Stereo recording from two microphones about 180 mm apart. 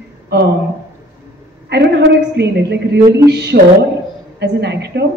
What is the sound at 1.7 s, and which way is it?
A man's voice, 70° right (ahead or behind).